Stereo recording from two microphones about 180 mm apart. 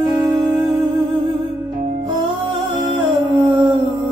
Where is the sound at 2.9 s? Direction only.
25° right (ahead or behind).